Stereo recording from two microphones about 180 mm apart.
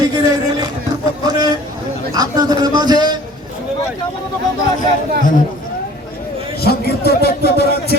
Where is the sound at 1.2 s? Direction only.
20° right (ahead or behind).